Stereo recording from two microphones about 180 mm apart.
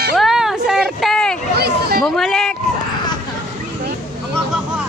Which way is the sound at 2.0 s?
Centre (ahead or behind).